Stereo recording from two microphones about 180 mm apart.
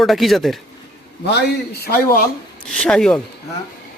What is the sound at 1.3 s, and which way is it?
Speech, 65° left (ahead or behind).